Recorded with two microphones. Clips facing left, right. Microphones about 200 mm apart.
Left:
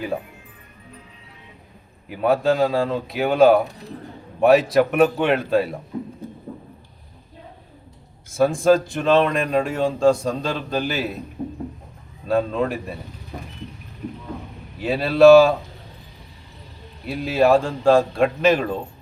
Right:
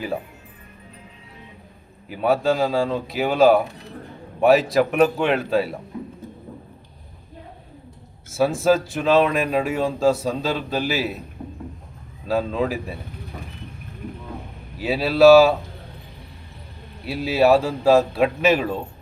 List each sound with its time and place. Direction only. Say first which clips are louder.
2.0 s speech: left 1 dB; centre (ahead or behind)
8.3 s speech: left 2 dB; 5° right (ahead or behind)
11.4 s a sound: left 10 dB; 25° left (ahead or behind)
12.3 s speech: left 1 dB; centre (ahead or behind)
14.8 s speech: left 1 dB; 5° right (ahead or behind)
17.1 s speech: even; 5° right (ahead or behind)